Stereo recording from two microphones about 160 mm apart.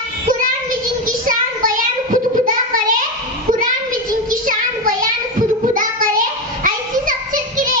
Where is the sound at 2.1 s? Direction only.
55° right (ahead or behind).